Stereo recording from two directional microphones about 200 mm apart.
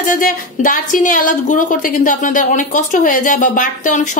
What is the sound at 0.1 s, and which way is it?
A woman's voice, 40° left (ahead or behind).